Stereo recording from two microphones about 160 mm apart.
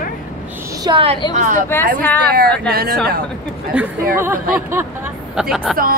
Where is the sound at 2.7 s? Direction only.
70° right (ahead or behind).